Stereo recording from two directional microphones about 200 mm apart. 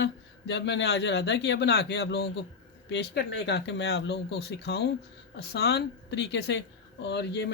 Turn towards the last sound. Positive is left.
turn(degrees=55)  # may be behind; listen again after turning